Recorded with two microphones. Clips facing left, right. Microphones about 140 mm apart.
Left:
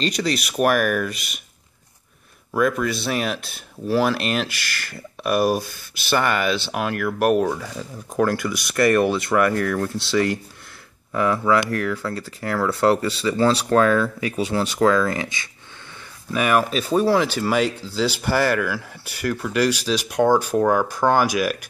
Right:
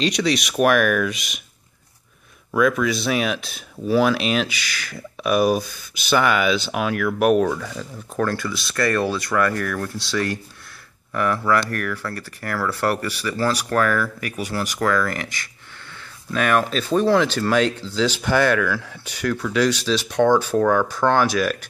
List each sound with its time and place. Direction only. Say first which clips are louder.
0.0 s speech: right 2 dB; 5° left (ahead or behind)
2.5 s speech: right 2 dB; centre (ahead or behind); by 15.5 s 20° left (ahead or behind)
16.3 s speech: even; 10° left (ahead or behind)